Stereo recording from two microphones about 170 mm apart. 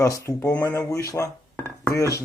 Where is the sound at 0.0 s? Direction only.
15° left (ahead or behind).